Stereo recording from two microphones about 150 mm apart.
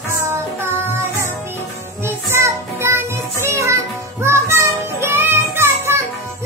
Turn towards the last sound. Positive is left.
turn(degrees=-15)  # may be behind; listen again after turning